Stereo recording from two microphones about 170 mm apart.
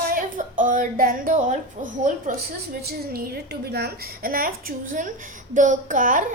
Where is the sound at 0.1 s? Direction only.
50° right (ahead or behind).